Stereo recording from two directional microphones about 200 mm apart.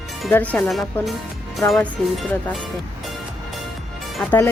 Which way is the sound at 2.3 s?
10° left (ahead or behind).